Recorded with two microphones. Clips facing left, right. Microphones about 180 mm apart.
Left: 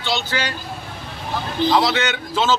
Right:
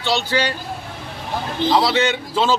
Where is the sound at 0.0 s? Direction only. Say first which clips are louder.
Right 4 dB; 35° right (ahead or behind).